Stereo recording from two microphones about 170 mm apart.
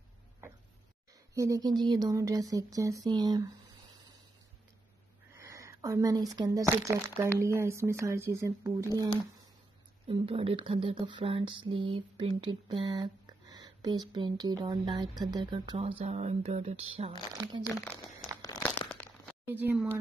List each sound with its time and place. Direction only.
1.3 s speech: 20° right (ahead or behind)
5.4 s speech: 15° right (ahead or behind)
10.0 s speech: 35° right (ahead or behind)
17.1 s speech: 25° right (ahead or behind)
18.4 s crumpling: 20° left (ahead or behind)
18.7 s crunch: 5° left (ahead or behind)
19.4 s speech: 10° right (ahead or behind)